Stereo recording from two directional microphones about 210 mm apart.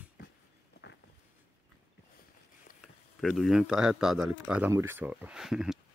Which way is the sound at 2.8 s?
Centre (ahead or behind).